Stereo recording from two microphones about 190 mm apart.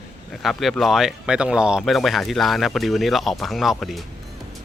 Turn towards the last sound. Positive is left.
turn(degrees=0)  # may be behind; listen again after turning